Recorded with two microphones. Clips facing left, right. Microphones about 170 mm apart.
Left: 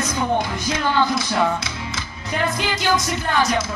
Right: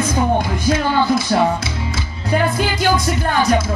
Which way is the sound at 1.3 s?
45° right (ahead or behind).